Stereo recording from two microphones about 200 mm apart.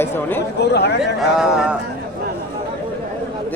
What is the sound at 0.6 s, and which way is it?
Speech, 55° left (ahead or behind).